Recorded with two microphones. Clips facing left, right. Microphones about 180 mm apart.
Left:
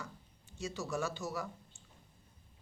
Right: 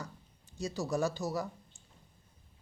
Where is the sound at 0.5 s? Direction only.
35° right (ahead or behind).